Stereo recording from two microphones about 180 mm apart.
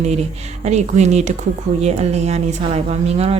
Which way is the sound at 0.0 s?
35° right (ahead or behind).